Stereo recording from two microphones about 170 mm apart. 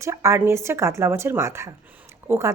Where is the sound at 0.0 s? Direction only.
15° right (ahead or behind).